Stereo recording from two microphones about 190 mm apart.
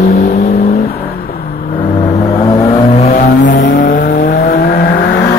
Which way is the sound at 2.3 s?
20° left (ahead or behind).